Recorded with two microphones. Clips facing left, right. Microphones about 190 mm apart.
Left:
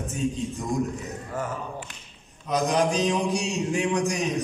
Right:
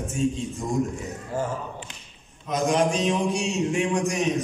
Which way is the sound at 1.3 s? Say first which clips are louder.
Right 3 dB; 25° right (ahead or behind).